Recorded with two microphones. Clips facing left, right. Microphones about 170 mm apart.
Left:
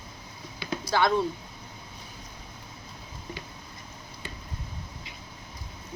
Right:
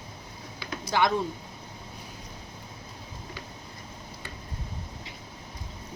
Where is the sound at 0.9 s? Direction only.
15° right (ahead or behind).